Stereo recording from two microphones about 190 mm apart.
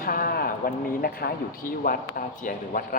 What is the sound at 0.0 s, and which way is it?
A man's voice, 50° left (ahead or behind).